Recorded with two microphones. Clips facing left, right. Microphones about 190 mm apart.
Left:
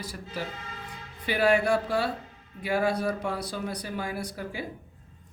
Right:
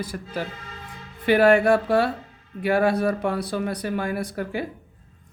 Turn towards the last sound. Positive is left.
turn(degrees=-60)  # may be behind; listen again after turning